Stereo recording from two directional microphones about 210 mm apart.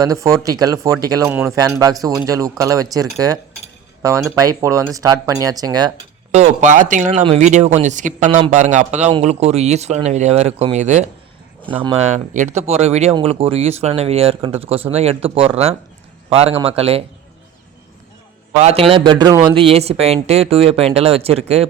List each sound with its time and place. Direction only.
0.0 s speech: 15° right (ahead or behind)
4.4 s speech: 15° right (ahead or behind)
6.3 s speech: 35° right (ahead or behind)
18.6 s speech: 30° right (ahead or behind)